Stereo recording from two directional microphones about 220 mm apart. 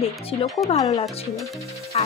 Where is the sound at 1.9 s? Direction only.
30° left (ahead or behind).